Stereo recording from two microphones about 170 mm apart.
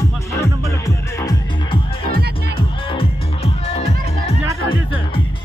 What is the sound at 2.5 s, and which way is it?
Music, 30° left (ahead or behind).